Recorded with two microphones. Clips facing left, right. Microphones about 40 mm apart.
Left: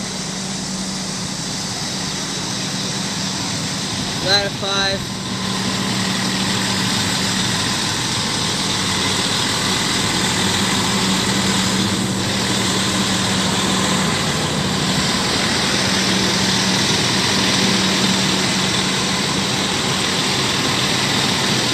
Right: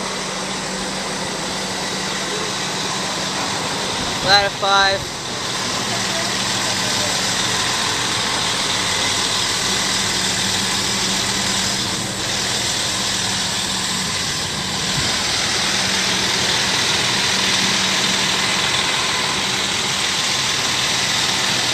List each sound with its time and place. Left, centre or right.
4.3 s speech: right
15.7 s vehicle: centre